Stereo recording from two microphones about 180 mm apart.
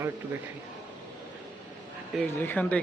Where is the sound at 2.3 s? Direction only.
10° left (ahead or behind).